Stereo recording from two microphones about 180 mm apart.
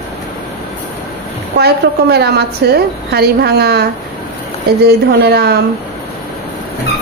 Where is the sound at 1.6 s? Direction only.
65° right (ahead or behind).